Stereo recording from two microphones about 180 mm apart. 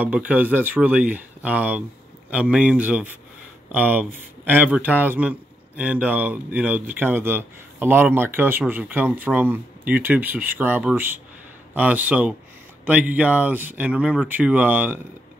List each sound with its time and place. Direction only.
0.0 s a man's voice: 10° right (ahead or behind)